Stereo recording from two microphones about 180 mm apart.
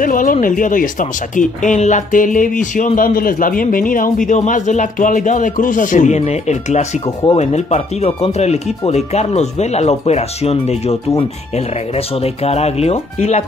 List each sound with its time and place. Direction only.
0.0 s speech: 50° left (ahead or behind)